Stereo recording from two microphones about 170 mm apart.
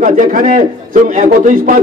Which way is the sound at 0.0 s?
50° right (ahead or behind).